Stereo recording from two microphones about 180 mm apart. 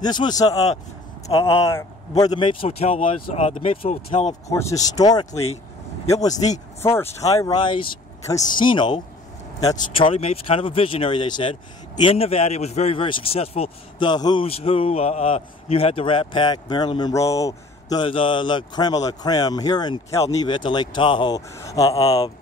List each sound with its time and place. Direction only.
0.0 s a man's voice: 25° left (ahead or behind)
1.7 s a man's voice: 20° left (ahead or behind); by 4.4 s 40° left (ahead or behind)
4.5 s a man's voice: 15° left (ahead or behind)
6.8 s a man's voice: 15° left (ahead or behind)